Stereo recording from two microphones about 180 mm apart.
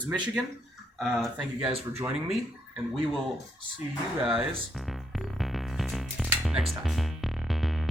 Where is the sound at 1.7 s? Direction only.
35° right (ahead or behind).